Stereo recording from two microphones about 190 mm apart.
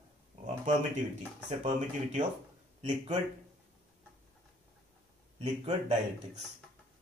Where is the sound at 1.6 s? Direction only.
35° right (ahead or behind).